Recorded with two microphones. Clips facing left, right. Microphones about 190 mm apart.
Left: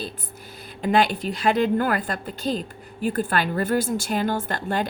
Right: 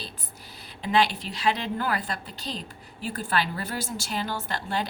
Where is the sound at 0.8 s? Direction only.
50° left (ahead or behind).